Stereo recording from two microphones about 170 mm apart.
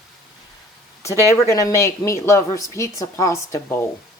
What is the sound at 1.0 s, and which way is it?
Speech, 20° left (ahead or behind).